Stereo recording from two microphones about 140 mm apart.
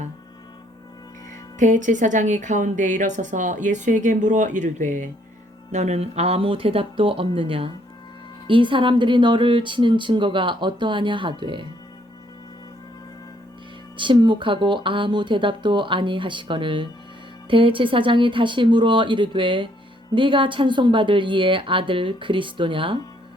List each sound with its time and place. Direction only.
1.5 s a woman's voice: 65° right (ahead or behind); by 11.6 s 35° right (ahead or behind)
13.9 s a woman's voice: 35° right (ahead or behind)